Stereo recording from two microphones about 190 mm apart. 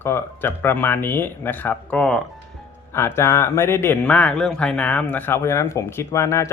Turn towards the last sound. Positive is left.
turn(degrees=15)  # may be behind; listen again after turning